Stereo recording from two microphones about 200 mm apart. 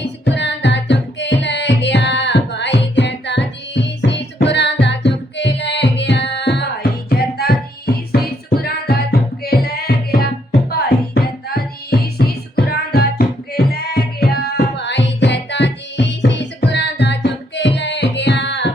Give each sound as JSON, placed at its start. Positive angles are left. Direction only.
{"t": 0.3, "sound": "music", "side_deg": 60}